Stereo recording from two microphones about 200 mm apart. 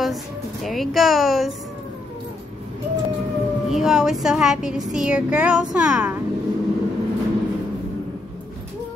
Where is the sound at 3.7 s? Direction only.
Centre (ahead or behind).